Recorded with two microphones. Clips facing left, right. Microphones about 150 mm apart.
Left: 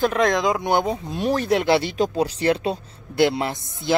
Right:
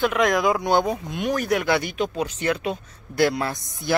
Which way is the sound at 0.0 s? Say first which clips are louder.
Left 1 dB; 35° left (ahead or behind).